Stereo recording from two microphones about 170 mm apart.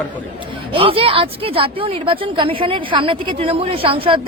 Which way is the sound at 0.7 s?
35° right (ahead or behind).